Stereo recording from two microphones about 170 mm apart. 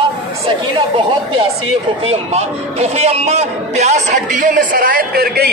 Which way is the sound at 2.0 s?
40° right (ahead or behind).